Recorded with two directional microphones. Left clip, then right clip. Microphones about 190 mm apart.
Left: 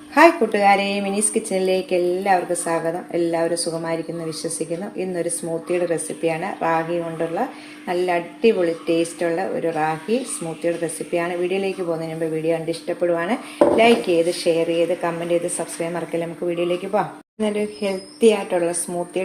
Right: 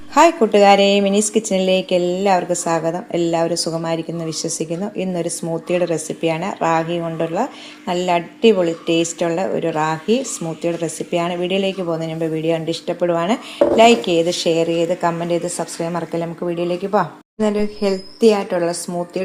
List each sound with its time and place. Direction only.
0.1 s a woman's voice: 40° right (ahead or behind)